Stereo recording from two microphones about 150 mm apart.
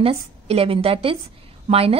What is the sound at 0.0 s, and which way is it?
A woman's voice, 40° right (ahead or behind).